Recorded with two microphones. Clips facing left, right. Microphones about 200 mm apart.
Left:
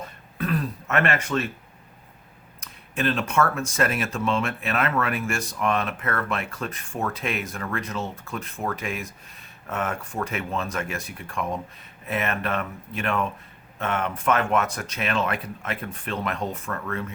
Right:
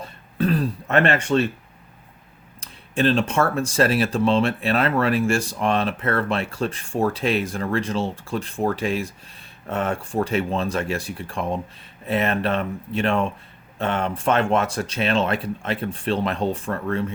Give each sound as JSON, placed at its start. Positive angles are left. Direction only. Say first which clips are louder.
{"t": 0.0, "sound": "throat clearing", "louder": "right 7 dB", "side_deg": -30}
{"t": 2.6, "sound": "speech", "louder": "right 6 dB", "side_deg": -30}